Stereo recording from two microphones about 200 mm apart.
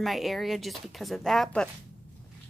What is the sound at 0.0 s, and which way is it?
Speech, centre (ahead or behind).